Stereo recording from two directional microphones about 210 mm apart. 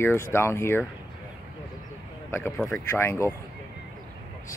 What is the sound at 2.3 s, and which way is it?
Speech, 10° left (ahead or behind).